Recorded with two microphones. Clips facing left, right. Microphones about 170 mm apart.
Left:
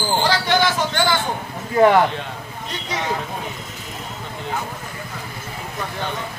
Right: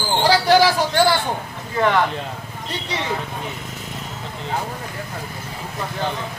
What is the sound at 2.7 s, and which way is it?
Speech, 30° right (ahead or behind).